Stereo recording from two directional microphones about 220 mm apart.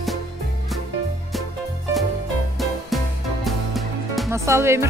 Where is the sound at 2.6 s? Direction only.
Centre (ahead or behind).